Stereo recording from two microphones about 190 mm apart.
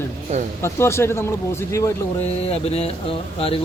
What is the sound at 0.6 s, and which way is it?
Speech, 15° left (ahead or behind).